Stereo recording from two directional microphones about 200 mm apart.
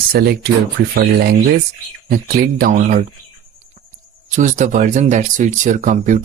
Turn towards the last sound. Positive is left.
turn(degrees=-40)  # may be behind; listen again after turning